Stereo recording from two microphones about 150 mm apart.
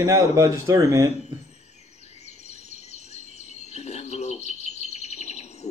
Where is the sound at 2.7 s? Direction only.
50° left (ahead or behind).